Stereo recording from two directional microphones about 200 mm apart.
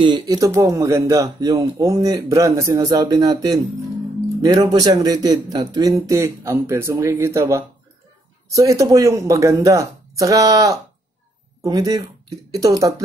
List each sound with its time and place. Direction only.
0.0 s speech: 20° right (ahead or behind)